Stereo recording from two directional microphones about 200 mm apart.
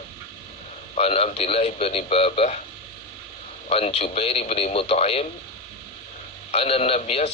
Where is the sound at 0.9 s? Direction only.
30° left (ahead or behind).